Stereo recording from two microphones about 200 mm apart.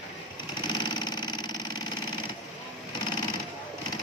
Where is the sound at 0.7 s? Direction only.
20° left (ahead or behind).